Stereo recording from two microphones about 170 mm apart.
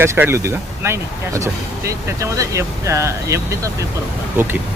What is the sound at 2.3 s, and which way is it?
Speech, 20° right (ahead or behind).